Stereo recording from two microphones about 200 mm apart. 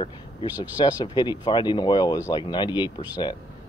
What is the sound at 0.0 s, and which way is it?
Speech, 25° left (ahead or behind).